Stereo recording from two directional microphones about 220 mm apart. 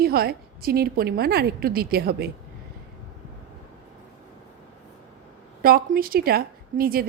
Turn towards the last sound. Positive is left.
turn(degrees=-40)  # may be behind; listen again after turning